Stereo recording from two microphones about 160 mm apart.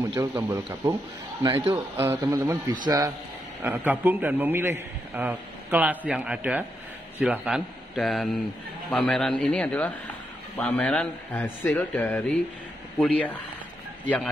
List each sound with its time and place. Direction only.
0.0 s speech: 20° right (ahead or behind)
1.7 s a man's voice: 15° right (ahead or behind)
3.6 s a man's voice: 10° right (ahead or behind); by 14.3 s 5° left (ahead or behind)